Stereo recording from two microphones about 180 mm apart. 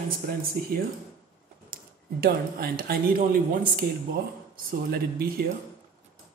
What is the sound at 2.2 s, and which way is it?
Speech, 55° right (ahead or behind).